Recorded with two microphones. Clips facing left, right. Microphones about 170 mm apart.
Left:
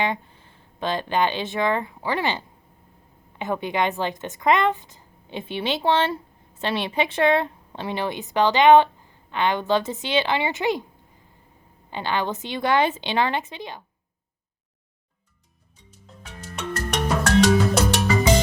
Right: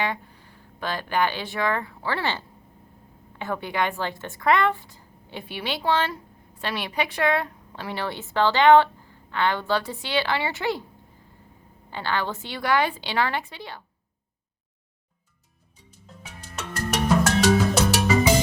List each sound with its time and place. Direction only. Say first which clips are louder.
0.0 s a woman's voice: left 3 dB; 20° left (ahead or behind)
11.9 s a woman's voice: left 2 dB; 20° left (ahead or behind)
16.2 s music: left 5 dB; 5° right (ahead or behind)